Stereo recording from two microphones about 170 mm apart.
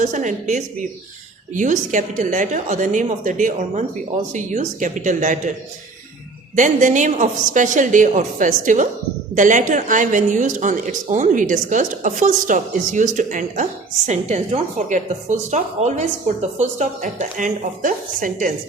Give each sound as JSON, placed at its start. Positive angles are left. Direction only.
{"t": 0.0, "sound": "speech", "side_deg": -50}
{"t": 6.6, "sound": "speech", "side_deg": -45}